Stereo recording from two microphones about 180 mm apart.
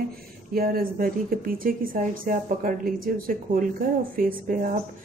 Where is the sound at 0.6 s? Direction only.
55° right (ahead or behind).